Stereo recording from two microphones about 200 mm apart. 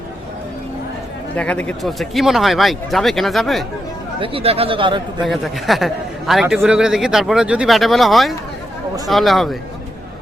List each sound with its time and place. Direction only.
1.4 s a man's voice: 5° left (ahead or behind)
4.2 s speech: 25° right (ahead or behind)
5.2 s a man's voice: centre (ahead or behind)